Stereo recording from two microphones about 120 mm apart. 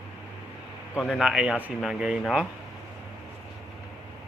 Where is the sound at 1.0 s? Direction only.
5° right (ahead or behind).